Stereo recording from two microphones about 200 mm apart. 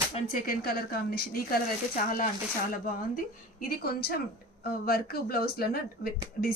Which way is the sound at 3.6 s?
50° left (ahead or behind).